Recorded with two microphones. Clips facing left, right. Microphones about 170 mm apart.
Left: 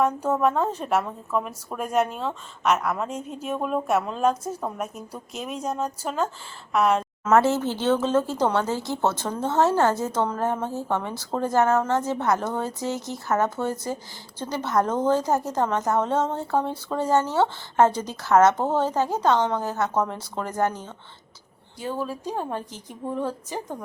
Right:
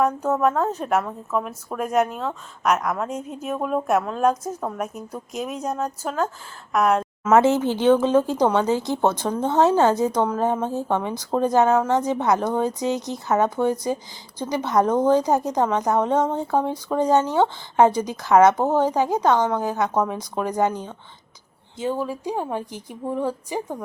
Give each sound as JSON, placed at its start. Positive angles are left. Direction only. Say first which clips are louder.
{"t": 0.0, "sound": "speech", "louder": "right 2 dB", "side_deg": 10}
{"t": 0.6, "sound": "a woman's voice", "louder": "right 2 dB", "side_deg": -10}
{"t": 3.1, "sound": "a woman's voice", "louder": "right 2 dB", "side_deg": -10}